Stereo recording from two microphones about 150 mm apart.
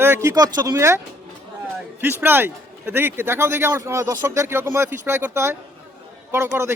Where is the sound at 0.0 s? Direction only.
20° right (ahead or behind).